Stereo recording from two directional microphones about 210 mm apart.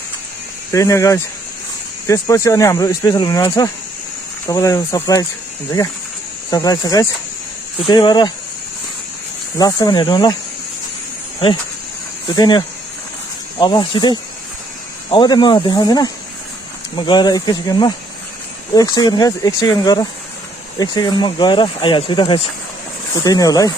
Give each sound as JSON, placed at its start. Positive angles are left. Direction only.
{"t": 0.7, "sound": "speech", "side_deg": 15}
{"t": 6.5, "sound": "speech", "side_deg": 15}
{"t": 9.6, "sound": "speech", "side_deg": 15}
{"t": 12.3, "sound": "speech", "side_deg": 20}